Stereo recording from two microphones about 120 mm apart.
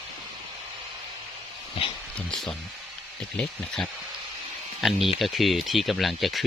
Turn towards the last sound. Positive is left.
turn(degrees=0)  # may be behind; listen again after turning